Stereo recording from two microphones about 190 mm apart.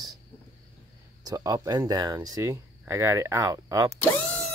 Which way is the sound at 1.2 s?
20° right (ahead or behind).